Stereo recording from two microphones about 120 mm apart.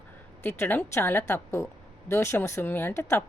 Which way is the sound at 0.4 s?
15° left (ahead or behind).